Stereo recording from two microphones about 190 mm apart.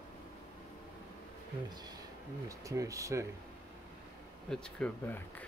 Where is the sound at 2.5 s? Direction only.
15° right (ahead or behind).